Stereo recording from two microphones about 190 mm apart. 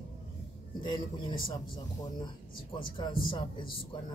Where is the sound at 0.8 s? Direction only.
25° left (ahead or behind).